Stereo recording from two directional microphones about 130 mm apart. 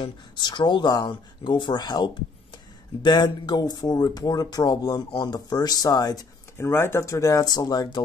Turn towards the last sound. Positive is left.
turn(degrees=30)  # may be behind; listen again after turning